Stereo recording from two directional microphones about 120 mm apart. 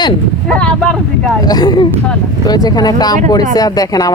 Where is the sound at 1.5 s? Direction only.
35° left (ahead or behind).